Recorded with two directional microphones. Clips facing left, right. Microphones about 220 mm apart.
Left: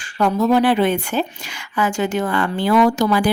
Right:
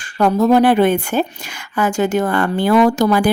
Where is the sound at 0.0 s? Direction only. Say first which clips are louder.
Right 3 dB; 40° right (ahead or behind).